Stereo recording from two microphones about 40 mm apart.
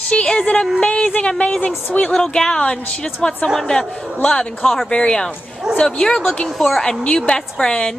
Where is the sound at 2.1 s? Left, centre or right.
Centre.